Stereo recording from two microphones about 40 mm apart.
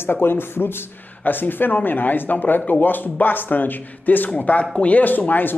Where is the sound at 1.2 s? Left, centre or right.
Left.